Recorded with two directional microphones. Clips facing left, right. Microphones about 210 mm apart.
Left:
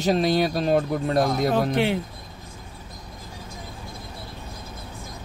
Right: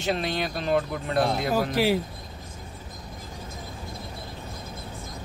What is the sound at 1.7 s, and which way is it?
Speech, 5° right (ahead or behind).